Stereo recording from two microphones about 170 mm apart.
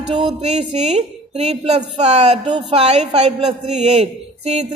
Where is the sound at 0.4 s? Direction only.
40° right (ahead or behind).